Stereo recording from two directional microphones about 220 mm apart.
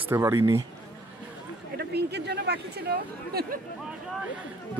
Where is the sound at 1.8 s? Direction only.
50° right (ahead or behind).